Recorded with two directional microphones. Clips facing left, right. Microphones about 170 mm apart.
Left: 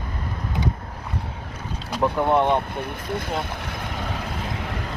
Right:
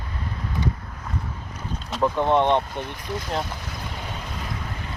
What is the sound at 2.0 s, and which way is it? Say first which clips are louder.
Speech: even; 5° left (ahead or behind).